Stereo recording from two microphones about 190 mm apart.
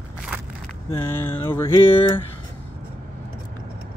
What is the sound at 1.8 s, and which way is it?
Speech, 30° left (ahead or behind).